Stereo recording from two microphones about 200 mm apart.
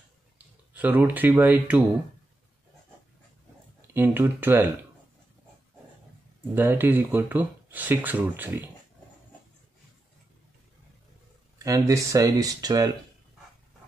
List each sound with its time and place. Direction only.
0.7 s speech: 10° right (ahead or behind)
3.8 s speech: 10° right (ahead or behind)
6.5 s speech: 10° right (ahead or behind)
11.5 s speech: 15° right (ahead or behind)